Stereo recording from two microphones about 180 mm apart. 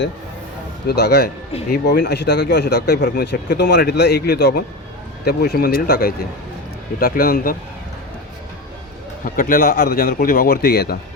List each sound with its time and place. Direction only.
0.9 s speech: 65° left (ahead or behind)
9.2 s speech: 50° left (ahead or behind)